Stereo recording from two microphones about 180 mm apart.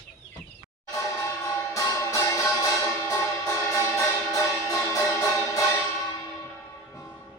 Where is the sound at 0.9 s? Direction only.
15° left (ahead or behind).